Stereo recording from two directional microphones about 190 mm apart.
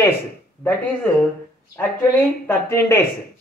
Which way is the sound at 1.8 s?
10° left (ahead or behind).